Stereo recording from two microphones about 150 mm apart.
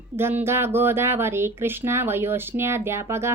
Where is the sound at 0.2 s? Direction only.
15° right (ahead or behind).